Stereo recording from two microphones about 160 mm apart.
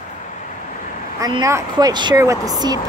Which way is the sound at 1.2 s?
20° right (ahead or behind).